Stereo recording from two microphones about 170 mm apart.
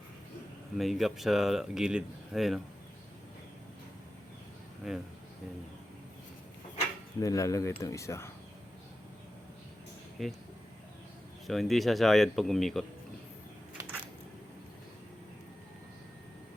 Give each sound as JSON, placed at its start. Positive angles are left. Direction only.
{"t": 0.8, "sound": "speech", "side_deg": 0}
{"t": 4.9, "sound": "speech", "side_deg": 0}
{"t": 7.2, "sound": "speech", "side_deg": 20}
{"t": 10.2, "sound": "speech", "side_deg": 0}
{"t": 11.4, "sound": "speech", "side_deg": 0}
{"t": 13.7, "sound": "a sound", "side_deg": -10}